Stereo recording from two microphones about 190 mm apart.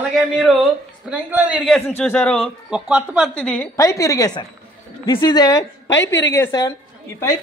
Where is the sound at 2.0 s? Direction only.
10° left (ahead or behind).